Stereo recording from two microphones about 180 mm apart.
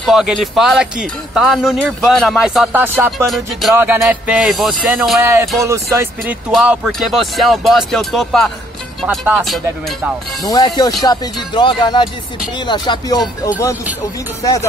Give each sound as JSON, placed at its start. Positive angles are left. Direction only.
{"t": 0.0, "sound": "speech", "side_deg": 0}
{"t": 5.2, "sound": "speech", "side_deg": -15}
{"t": 6.5, "sound": "speech", "side_deg": -5}
{"t": 10.8, "sound": "speech", "side_deg": 20}
{"t": 14.4, "sound": "speech", "side_deg": 20}